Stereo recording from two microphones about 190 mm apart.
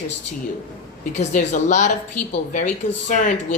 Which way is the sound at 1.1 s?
40° left (ahead or behind).